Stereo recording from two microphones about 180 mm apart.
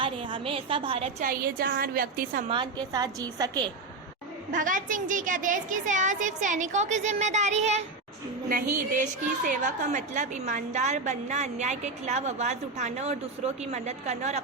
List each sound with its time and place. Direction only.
0.0 s a woman's voice: 30° right (ahead or behind)
1.2 s a woman's voice: 55° right (ahead or behind)
2.5 s a woman's voice: 25° right (ahead or behind)
4.5 s a woman's voice: 45° right (ahead or behind)